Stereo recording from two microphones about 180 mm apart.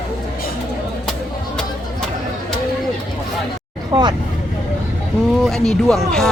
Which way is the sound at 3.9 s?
25° right (ahead or behind).